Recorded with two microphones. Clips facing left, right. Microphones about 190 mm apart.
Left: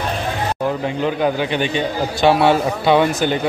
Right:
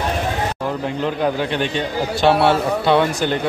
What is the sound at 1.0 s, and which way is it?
A man's voice, centre (ahead or behind).